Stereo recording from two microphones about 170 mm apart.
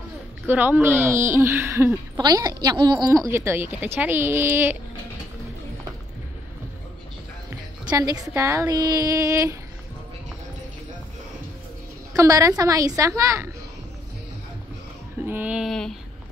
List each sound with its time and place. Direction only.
0.5 s speech: 10° right (ahead or behind)
7.9 s a woman's voice: 25° right (ahead or behind)
12.1 s a woman's voice: 20° right (ahead or behind)
15.2 s speech: 10° right (ahead or behind)